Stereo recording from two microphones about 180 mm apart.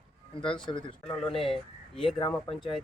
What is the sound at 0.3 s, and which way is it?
Speech, 30° left (ahead or behind).